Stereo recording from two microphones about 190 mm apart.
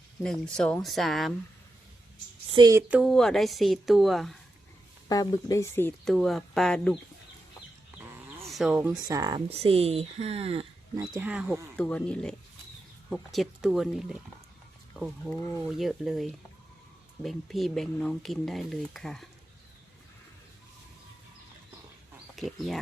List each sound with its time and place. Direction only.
0.2 s speech: 5° left (ahead or behind)
2.5 s speech: 20° right (ahead or behind)
2.9 s speech: centre (ahead or behind)
5.0 s speech: 20° left (ahead or behind)
8.4 s a sound: centre (ahead or behind)
8.7 s speech: 10° right (ahead or behind)
9.5 s speech: 30° right (ahead or behind)
10.9 s speech: 15° right (ahead or behind)
11.8 s speech: 5° left (ahead or behind)
22.4 s speech: centre (ahead or behind)